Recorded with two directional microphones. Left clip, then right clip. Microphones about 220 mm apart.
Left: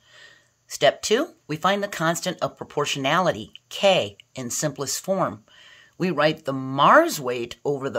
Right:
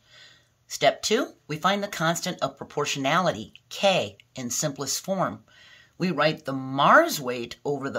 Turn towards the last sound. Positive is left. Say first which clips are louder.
# left 3 dB
turn(degrees=30)  # may be behind; listen again after turning